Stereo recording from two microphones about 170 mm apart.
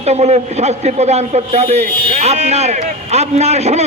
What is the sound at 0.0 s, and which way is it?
A man's voice, 40° right (ahead or behind).